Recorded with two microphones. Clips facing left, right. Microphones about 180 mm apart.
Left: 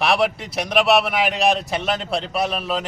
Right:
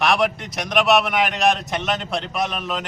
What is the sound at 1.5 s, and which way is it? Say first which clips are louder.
A man's voice: left 2 dB; 30° left (ahead or behind).